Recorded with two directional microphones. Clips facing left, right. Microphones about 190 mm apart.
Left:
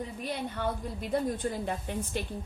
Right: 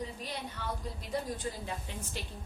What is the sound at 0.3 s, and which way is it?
A woman's voice, 55° left (ahead or behind).